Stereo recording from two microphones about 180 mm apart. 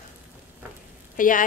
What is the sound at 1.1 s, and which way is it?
Speech, 50° left (ahead or behind).